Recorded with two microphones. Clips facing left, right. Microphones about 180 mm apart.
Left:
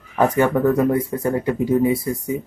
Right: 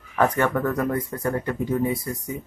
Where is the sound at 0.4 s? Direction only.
15° left (ahead or behind).